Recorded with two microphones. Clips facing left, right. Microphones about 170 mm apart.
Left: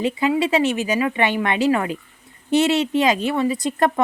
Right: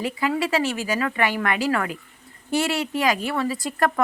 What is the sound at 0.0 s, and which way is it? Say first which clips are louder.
A woman's voice: left 4 dB; 20° left (ahead or behind).